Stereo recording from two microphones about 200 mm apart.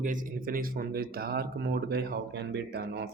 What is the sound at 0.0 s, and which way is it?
Speech, 40° right (ahead or behind).